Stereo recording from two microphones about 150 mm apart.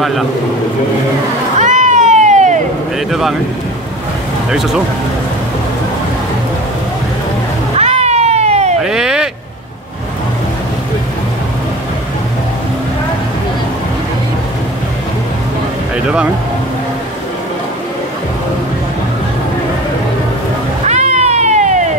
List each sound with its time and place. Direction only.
1.6 s cat: 55° right (ahead or behind)
3.1 s speech: centre (ahead or behind)
4.5 s speech: 5° right (ahead or behind)
7.7 s cat: 45° right (ahead or behind)
8.8 s a sound: 5° right (ahead or behind)
20.8 s cat: 50° right (ahead or behind)